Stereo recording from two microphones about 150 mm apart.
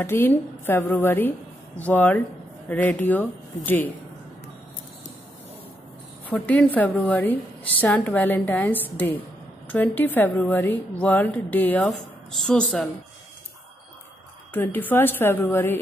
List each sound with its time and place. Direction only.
0.0 s a woman's voice: 15° left (ahead or behind)
6.3 s a woman's voice: 10° left (ahead or behind)
14.5 s a woman's voice: 10° left (ahead or behind)